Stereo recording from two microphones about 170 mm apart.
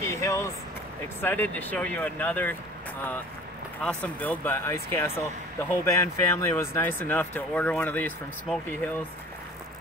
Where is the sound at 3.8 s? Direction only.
10° left (ahead or behind).